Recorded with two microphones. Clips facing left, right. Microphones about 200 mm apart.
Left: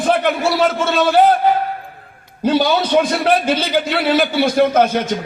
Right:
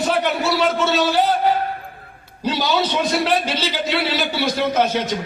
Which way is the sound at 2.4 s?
55° left (ahead or behind).